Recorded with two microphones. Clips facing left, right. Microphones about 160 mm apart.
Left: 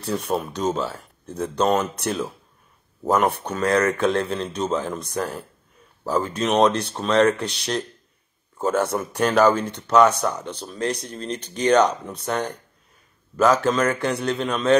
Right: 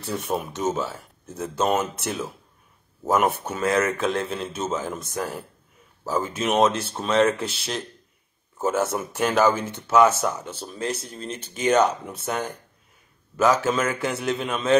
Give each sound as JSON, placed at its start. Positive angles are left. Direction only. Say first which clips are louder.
{"t": 0.0, "sound": "speech", "louder": "left 3 dB", "side_deg": 0}
{"t": 0.4, "sound": "speech", "louder": "left 2 dB", "side_deg": -20}
{"t": 0.7, "sound": "speech", "louder": "even", "side_deg": 0}
{"t": 3.1, "sound": "speech", "louder": "left 1 dB", "side_deg": 0}
{"t": 13.7, "sound": "speech", "louder": "left 3 dB", "side_deg": -5}